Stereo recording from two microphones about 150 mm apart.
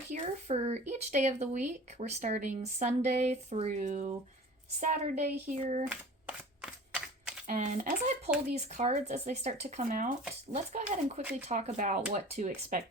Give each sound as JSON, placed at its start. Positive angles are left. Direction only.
{"t": 0.1, "sound": "speech", "side_deg": -45}
{"t": 5.9, "sound": "typewriter", "side_deg": -5}
{"t": 7.4, "sound": "speech", "side_deg": -60}
{"t": 9.9, "sound": "speech", "side_deg": -65}
{"t": 10.5, "sound": "speech", "side_deg": -50}
{"t": 11.2, "sound": "speech", "side_deg": -10}
{"t": 11.4, "sound": "speech", "side_deg": -50}